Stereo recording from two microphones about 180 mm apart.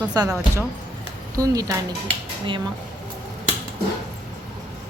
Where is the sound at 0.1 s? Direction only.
20° right (ahead or behind).